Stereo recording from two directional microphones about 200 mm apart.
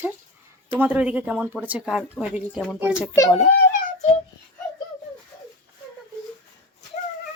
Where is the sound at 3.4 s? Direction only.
35° left (ahead or behind).